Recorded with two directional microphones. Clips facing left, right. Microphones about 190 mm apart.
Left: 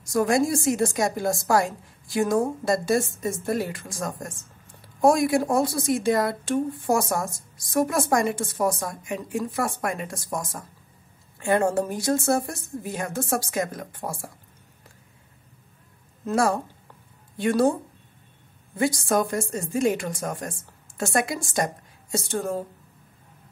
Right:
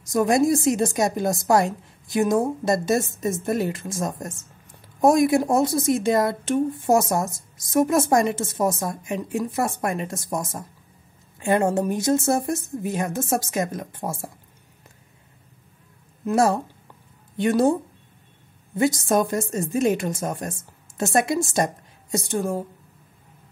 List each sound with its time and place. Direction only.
0.0 s a woman's voice: 20° right (ahead or behind)
16.3 s a woman's voice: 20° right (ahead or behind)
18.8 s a woman's voice: 20° right (ahead or behind)